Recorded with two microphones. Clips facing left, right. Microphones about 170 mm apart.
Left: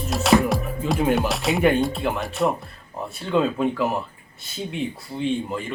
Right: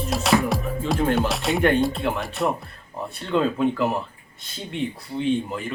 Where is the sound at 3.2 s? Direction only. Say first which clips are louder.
Even; 5° left (ahead or behind).